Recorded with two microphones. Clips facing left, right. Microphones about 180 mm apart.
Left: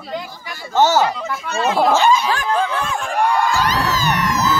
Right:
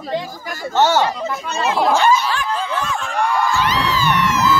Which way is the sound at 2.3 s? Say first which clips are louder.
Left 3 dB; 50° left (ahead or behind).